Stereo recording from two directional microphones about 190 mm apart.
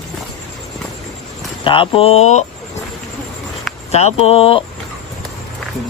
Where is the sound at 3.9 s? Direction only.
35° left (ahead or behind).